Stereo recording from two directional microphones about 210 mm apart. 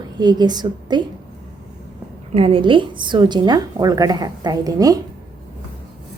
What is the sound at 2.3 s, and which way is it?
A woman's voice, 25° right (ahead or behind).